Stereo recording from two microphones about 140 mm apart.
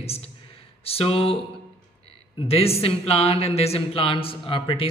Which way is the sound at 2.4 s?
45° left (ahead or behind).